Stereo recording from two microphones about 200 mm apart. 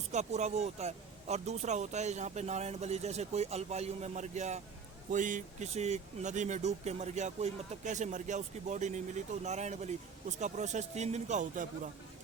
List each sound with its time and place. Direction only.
0.1 s speech: 35° right (ahead or behind)